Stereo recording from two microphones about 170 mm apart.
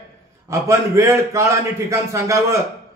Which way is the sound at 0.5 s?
20° right (ahead or behind).